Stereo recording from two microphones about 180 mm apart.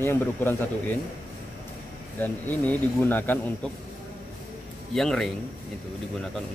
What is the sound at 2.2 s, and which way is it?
Speech, 10° left (ahead or behind).